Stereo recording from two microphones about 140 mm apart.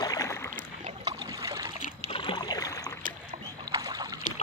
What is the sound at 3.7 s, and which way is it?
Rowboat, 25° right (ahead or behind).